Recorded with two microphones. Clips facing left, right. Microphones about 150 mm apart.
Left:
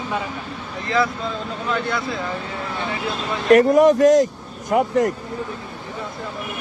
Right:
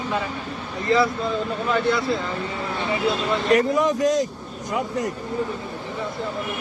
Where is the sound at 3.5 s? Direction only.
50° left (ahead or behind).